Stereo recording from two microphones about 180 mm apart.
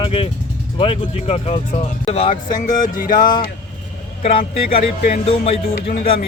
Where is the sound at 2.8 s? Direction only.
50° left (ahead or behind).